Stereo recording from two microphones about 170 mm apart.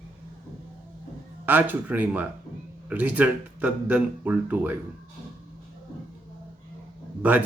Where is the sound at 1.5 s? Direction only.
10° right (ahead or behind).